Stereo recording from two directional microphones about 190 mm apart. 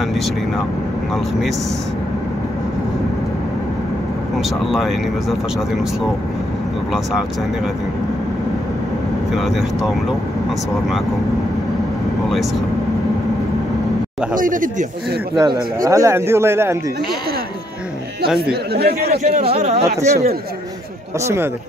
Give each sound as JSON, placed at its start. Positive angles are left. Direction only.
{"t": 4.4, "sound": "speech", "side_deg": 0}
{"t": 9.4, "sound": "speech", "side_deg": 0}
{"t": 14.3, "sound": "speech", "side_deg": -45}
{"t": 15.3, "sound": "speech", "side_deg": -15}
{"t": 18.5, "sound": "speech", "side_deg": -55}
{"t": 19.0, "sound": "a man's voice", "side_deg": -35}